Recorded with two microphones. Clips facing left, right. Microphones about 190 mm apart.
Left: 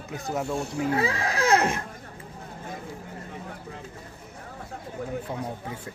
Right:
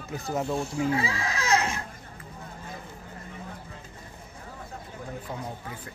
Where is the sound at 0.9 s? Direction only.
55° left (ahead or behind).